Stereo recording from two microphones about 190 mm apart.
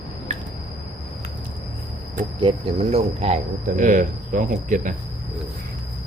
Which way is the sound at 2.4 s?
35° right (ahead or behind).